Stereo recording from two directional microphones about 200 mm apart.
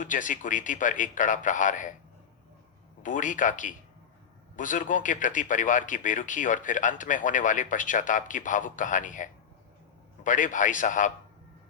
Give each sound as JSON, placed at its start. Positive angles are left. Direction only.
{"t": 0.0, "sound": "speech", "side_deg": 40}
{"t": 3.0, "sound": "speech", "side_deg": 40}